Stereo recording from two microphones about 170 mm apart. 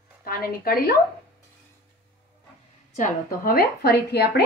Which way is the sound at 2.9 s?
55° left (ahead or behind).